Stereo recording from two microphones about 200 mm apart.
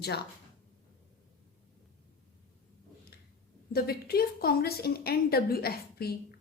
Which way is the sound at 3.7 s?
50° left (ahead or behind).